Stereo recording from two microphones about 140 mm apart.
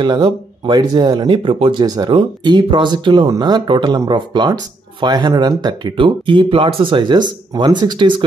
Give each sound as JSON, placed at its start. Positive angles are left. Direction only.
{"t": 0.0, "sound": "speech", "side_deg": -30}